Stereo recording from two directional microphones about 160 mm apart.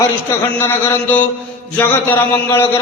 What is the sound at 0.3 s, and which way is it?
A man's voice, 15° left (ahead or behind).